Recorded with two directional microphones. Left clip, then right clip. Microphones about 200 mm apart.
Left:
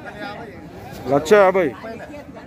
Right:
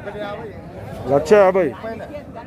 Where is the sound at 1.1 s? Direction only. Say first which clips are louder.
Right 1 dB; 20° left (ahead or behind).